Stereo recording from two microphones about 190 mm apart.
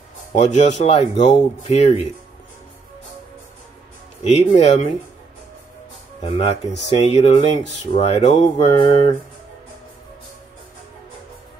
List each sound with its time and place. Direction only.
0.3 s speech: 40° left (ahead or behind)
4.2 s speech: 35° left (ahead or behind)
6.2 s speech: 30° left (ahead or behind)